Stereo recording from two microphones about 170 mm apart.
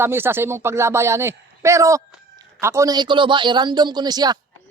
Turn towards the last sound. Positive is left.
turn(degrees=-25)  # may be behind; listen again after turning